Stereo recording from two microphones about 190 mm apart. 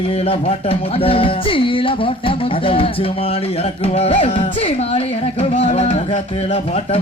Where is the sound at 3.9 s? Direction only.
35° left (ahead or behind).